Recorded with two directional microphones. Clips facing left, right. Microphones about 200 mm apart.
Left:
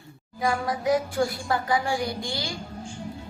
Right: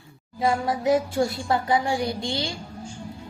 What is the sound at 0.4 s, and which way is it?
Speech, 25° right (ahead or behind).